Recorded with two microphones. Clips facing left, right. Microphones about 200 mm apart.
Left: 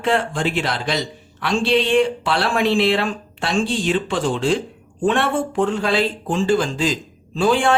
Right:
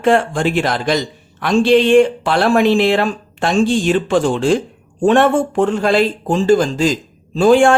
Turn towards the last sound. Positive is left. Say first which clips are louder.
# right 7 dB
turn(degrees=-45)  # may be behind; listen again after turning